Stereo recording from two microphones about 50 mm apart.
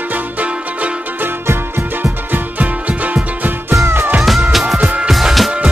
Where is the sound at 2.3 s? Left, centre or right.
Right.